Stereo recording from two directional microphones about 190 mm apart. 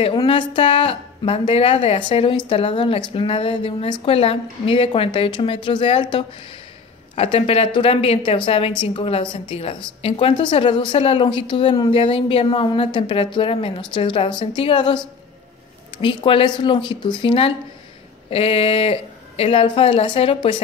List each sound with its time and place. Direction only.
0.0 s speech: 25° left (ahead or behind)
16.0 s speech: 25° left (ahead or behind)